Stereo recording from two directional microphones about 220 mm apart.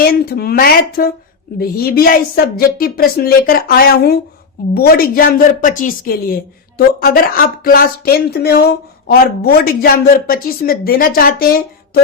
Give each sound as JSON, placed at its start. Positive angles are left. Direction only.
{"t": 0.0, "sound": "a woman's voice", "side_deg": 45}